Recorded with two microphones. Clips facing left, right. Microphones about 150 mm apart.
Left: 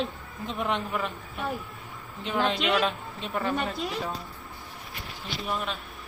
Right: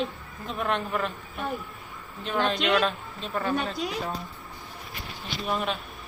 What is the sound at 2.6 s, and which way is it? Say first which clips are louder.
Speech: right 2 dB; 5° left (ahead or behind).